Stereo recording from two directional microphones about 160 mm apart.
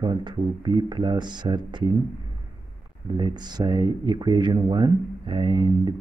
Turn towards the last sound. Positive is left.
turn(degrees=-30)  # may be behind; listen again after turning